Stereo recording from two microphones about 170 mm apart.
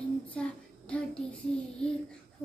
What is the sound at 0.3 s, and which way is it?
Child singing, 5° left (ahead or behind).